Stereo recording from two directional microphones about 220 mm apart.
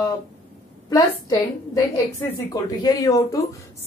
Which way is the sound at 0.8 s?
15° left (ahead or behind).